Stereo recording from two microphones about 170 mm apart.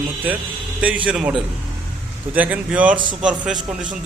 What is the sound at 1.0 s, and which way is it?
A man's voice, 5° right (ahead or behind).